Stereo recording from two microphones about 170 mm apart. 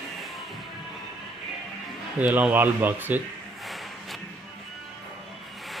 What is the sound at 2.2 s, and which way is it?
Speech, 10° right (ahead or behind).